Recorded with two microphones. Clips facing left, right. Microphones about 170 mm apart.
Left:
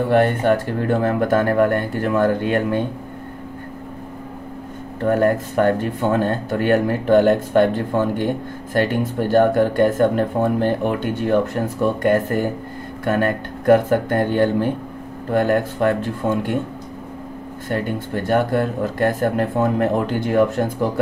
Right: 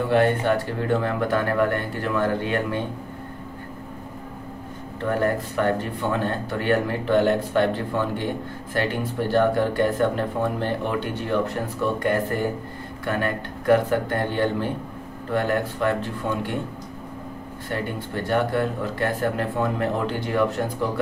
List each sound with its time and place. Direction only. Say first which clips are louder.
0.1 s speech: left 3 dB; 50° left (ahead or behind)
5.0 s speech: left 6 dB; 45° left (ahead or behind)
9.3 s speech: left 5 dB; 45° left (ahead or behind)
17.6 s speech: left 5 dB; 50° left (ahead or behind)